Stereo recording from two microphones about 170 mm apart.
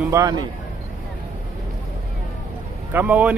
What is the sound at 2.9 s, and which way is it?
Speech, 10° right (ahead or behind).